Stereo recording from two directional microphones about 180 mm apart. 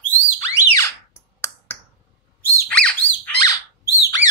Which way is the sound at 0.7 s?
15° left (ahead or behind).